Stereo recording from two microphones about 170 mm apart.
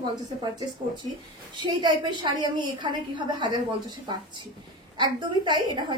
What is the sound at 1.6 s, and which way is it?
A woman's voice, 25° right (ahead or behind).